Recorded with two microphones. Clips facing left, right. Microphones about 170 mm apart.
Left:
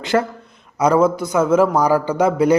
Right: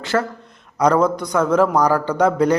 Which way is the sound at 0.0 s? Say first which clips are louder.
Left 2 dB; 15° left (ahead or behind).